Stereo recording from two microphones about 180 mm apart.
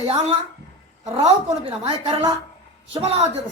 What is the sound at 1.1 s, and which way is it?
Speech, 35° right (ahead or behind).